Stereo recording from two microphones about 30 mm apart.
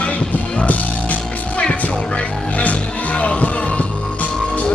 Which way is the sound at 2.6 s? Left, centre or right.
Left.